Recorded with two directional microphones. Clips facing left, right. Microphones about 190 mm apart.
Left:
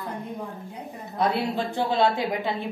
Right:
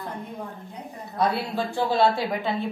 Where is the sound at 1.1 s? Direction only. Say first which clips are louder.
Even; 20° left (ahead or behind).